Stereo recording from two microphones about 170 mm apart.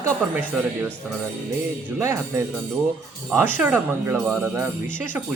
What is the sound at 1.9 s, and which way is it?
Speech, 15° right (ahead or behind).